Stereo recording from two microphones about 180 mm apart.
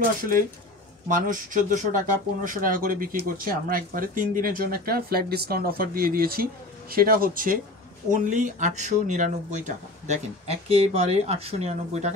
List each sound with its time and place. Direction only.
1.0 s speech: 45° right (ahead or behind)